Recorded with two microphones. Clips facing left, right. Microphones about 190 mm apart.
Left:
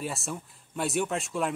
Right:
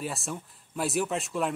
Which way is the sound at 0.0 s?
Centre (ahead or behind).